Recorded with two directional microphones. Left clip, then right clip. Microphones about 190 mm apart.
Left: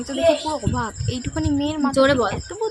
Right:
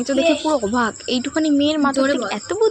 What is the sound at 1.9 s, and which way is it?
Speech, 30° left (ahead or behind).